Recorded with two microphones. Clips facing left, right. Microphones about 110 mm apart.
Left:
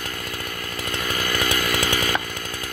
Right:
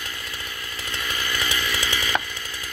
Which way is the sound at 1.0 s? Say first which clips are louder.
Left 4 dB; 45° left (ahead or behind).